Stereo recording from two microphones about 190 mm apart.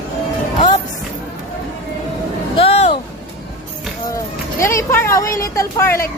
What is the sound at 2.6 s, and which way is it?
Music, 30° left (ahead or behind).